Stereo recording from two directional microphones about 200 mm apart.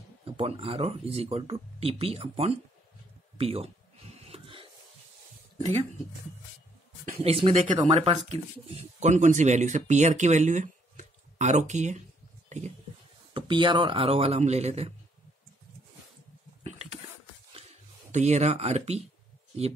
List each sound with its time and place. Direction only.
0.2 s speech: 30° right (ahead or behind)
4.2 s wheeze: 25° right (ahead or behind)
7.2 s speech: 30° right (ahead or behind)
12.4 s a sound: 35° right (ahead or behind)
13.3 s speech: 25° right (ahead or behind)
16.6 s a sound: 35° right (ahead or behind)
18.1 s speech: 35° right (ahead or behind)